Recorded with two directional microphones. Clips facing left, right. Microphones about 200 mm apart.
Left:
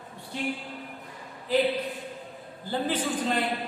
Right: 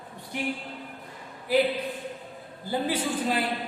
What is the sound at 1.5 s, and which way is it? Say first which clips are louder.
Speech: right 2 dB; 10° right (ahead or behind).